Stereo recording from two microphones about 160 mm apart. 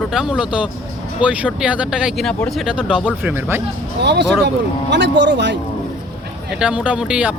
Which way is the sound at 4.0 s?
90° right.